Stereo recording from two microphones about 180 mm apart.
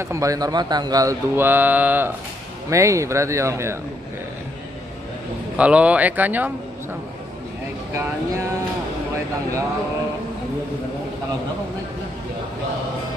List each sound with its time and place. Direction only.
0.0 s a man's voice: 15° right (ahead or behind)
5.6 s a man's voice: 5° right (ahead or behind)
7.9 s a man's voice: 15° right (ahead or behind)